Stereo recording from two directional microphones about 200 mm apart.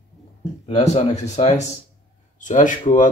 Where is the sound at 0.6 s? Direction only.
35° left (ahead or behind).